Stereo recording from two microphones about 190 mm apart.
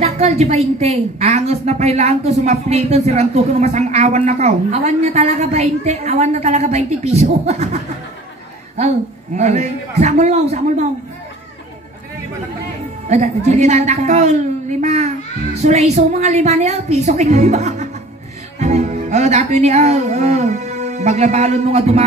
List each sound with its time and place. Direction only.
0.0 s a woman's voice: 35° right (ahead or behind)
13.1 s a woman's voice: 35° right (ahead or behind)